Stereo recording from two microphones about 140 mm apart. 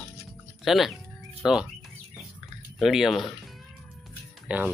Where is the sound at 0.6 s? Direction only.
Centre (ahead or behind).